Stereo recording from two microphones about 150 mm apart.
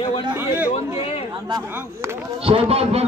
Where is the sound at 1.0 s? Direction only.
40° left (ahead or behind).